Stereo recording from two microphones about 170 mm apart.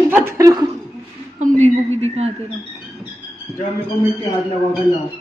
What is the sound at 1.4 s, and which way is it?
Speech, 50° right (ahead or behind).